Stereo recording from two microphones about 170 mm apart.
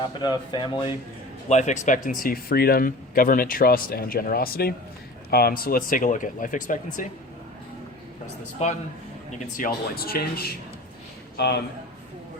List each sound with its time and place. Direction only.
0.2 s speech: 25° left (ahead or behind)
1.5 s speech: 45° left (ahead or behind)
2.0 s speech: 55° left (ahead or behind)
8.6 s a man's voice: 40° left (ahead or behind)
9.5 s speech: 55° left (ahead or behind)
11.3 s a man's voice: 80° left